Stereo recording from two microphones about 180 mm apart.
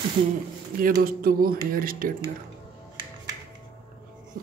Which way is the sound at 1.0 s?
55° right (ahead or behind).